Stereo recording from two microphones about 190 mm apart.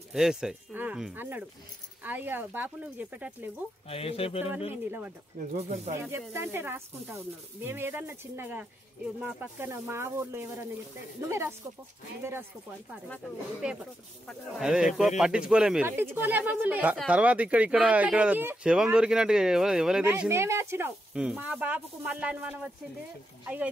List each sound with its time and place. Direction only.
0.1 s speech: centre (ahead or behind)
3.9 s speech: 30° left (ahead or behind)
5.5 s speech: 35° right (ahead or behind)
5.9 s speech: 15° right (ahead or behind)
13.1 s speech: centre (ahead or behind)